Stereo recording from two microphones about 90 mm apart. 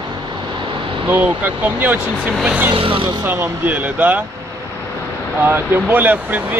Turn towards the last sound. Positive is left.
turn(degrees=-20)  # may be behind; listen again after turning